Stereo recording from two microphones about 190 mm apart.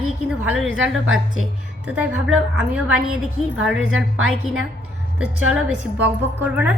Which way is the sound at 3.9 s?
90° right.